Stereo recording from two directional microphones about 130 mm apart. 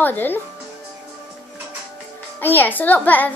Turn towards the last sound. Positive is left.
turn(degrees=15)  # may be behind; listen again after turning